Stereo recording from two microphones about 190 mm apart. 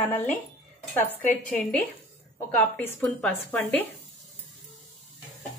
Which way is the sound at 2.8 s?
10° left (ahead or behind).